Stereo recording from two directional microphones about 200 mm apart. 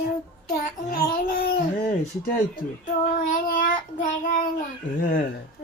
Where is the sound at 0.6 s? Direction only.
45° left (ahead or behind).